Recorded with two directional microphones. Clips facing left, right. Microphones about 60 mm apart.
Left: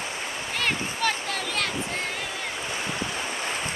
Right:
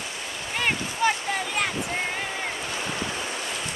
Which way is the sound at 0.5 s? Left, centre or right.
Centre.